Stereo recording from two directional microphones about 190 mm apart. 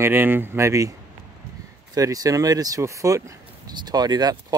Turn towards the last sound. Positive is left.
turn(degrees=-20)  # may be behind; listen again after turning